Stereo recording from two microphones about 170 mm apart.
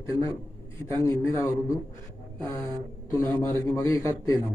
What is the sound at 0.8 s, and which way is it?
Speech, 15° left (ahead or behind).